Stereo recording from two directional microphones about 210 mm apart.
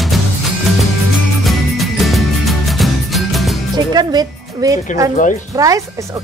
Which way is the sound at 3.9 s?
20° right (ahead or behind).